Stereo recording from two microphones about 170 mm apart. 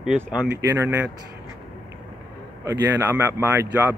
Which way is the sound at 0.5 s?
15° right (ahead or behind).